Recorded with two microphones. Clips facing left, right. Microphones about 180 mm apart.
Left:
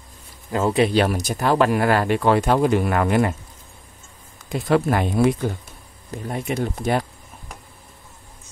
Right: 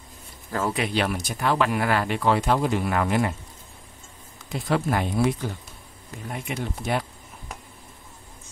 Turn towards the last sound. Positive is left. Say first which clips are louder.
# left 5 dB
turn(degrees=40)  # may be behind; listen again after turning